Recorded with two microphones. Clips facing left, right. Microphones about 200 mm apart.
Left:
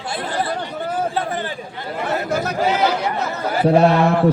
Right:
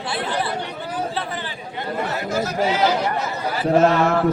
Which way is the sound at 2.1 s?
60° left (ahead or behind).